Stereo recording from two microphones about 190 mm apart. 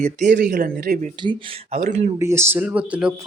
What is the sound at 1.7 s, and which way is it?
Speech, 35° right (ahead or behind).